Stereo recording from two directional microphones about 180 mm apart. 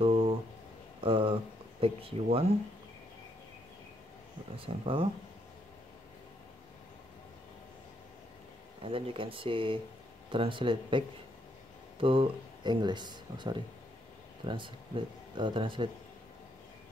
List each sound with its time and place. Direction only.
0.0 s a sound: 30° right (ahead or behind)
1.0 s speech: 30° right (ahead or behind)
4.6 s speech: 30° right (ahead or behind)
8.8 s speech: 30° right (ahead or behind)